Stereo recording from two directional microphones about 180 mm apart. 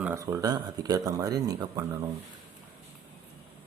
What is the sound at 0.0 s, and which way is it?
Speech, 15° right (ahead or behind).